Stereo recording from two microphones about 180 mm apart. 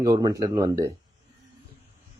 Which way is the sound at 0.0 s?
20° right (ahead or behind).